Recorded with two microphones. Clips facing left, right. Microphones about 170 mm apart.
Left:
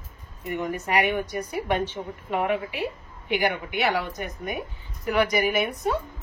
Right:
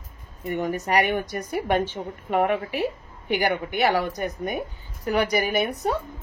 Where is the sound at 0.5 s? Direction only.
40° right (ahead or behind).